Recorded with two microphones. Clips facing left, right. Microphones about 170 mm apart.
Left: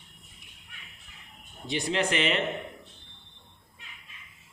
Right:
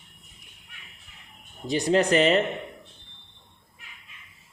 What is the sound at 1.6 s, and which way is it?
Speech, 40° right (ahead or behind).